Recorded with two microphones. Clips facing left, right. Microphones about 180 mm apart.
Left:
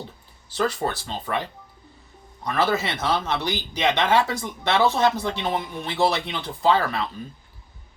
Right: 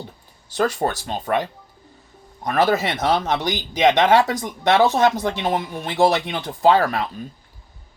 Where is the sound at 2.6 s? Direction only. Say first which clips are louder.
Right 4 dB; 15° right (ahead or behind).